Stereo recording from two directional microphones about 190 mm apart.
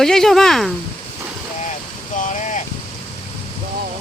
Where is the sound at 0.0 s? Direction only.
Centre (ahead or behind).